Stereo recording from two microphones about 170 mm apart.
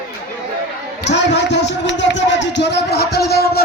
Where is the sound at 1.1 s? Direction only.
90° left; by 3.6 s 70° left (ahead or behind).